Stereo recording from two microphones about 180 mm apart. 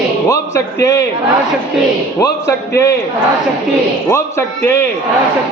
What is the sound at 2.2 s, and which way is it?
Speech, 15° left (ahead or behind).